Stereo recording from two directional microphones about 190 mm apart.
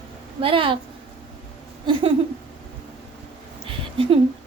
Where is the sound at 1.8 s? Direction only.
25° right (ahead or behind).